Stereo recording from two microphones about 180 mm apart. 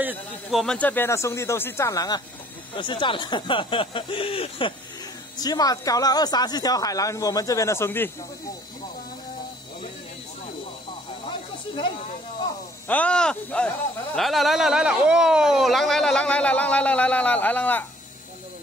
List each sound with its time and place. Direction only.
0.0 s speech: 5° right (ahead or behind); by 8.1 s 15° left (ahead or behind)
12.8 s speech: 10° left (ahead or behind)